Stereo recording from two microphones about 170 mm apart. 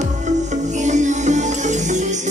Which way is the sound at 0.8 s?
45° right (ahead or behind).